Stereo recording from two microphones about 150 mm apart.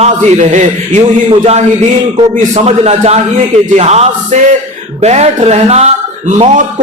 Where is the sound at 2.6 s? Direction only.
50° right (ahead or behind).